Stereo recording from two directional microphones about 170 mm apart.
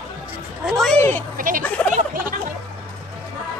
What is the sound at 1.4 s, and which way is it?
Speech, 50° right (ahead or behind).